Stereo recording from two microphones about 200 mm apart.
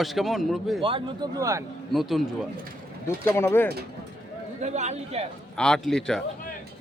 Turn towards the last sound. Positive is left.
turn(degrees=5)  # may be behind; listen again after turning